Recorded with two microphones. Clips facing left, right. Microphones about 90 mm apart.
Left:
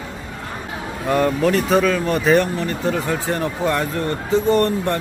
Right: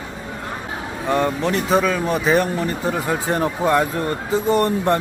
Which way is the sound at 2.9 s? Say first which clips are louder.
Even; 20° right (ahead or behind).